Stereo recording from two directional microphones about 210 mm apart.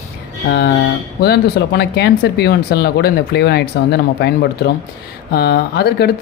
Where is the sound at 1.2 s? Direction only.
50° left (ahead or behind).